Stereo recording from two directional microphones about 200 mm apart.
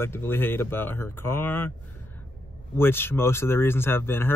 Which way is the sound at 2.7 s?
10° left (ahead or behind).